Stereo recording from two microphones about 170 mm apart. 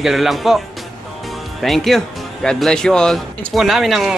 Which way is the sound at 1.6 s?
Centre (ahead or behind).